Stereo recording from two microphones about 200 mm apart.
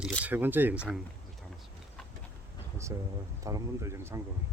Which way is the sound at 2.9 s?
15° right (ahead or behind).